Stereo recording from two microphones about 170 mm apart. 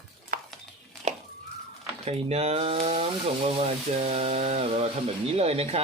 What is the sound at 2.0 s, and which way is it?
Rub, 35° right (ahead or behind).